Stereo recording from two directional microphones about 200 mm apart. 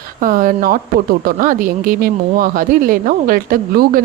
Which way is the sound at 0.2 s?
45° right (ahead or behind).